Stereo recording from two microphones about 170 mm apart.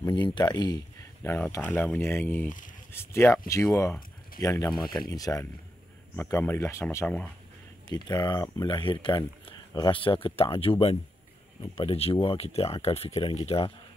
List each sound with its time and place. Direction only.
0.0 s speech: 25° left (ahead or behind)
1.3 s speech: 10° left (ahead or behind)
4.6 s speech: 5° left (ahead or behind)
5.0 s speech: 20° left (ahead or behind)
7.9 s speech: 25° left (ahead or behind)